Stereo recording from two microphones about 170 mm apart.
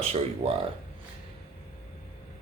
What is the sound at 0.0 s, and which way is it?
Speech, 35° right (ahead or behind).